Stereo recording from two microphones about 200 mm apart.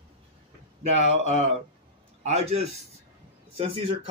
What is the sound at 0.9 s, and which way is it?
Speech, 35° right (ahead or behind).